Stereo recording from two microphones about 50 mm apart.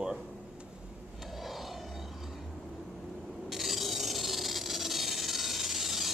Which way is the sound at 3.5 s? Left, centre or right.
Centre.